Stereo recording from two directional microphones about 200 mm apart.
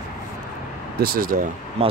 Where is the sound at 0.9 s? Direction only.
50° right (ahead or behind).